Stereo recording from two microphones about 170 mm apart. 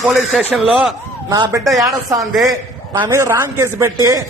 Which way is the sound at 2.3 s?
Centre (ahead or behind).